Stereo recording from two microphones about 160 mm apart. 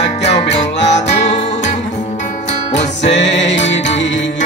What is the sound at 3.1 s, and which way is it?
Music, 90° left.